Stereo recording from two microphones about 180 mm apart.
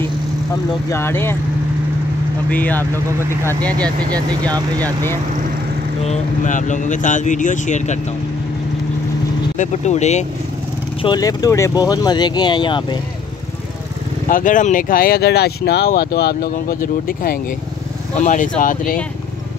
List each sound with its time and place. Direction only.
0.8 s speech: 15° left (ahead or behind)
2.5 s speech: 10° left (ahead or behind)
4.1 s speech: 20° right (ahead or behind)
4.8 s speech: 15° left (ahead or behind)
6.0 s speech: 45° left (ahead or behind)
9.6 s speech: 40° left (ahead or behind)
11.0 s speech: 25° left (ahead or behind)
14.3 s speech: 45° left (ahead or behind)